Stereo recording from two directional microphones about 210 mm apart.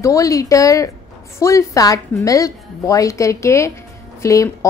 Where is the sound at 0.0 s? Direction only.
15° left (ahead or behind).